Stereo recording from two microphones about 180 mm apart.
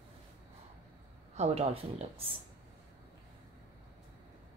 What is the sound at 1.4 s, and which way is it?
Speech, 35° right (ahead or behind).